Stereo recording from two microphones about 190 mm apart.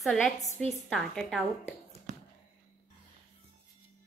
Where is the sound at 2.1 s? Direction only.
40° right (ahead or behind).